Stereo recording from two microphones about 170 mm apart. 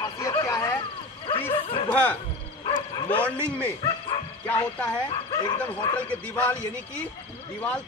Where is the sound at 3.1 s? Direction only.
10° left (ahead or behind).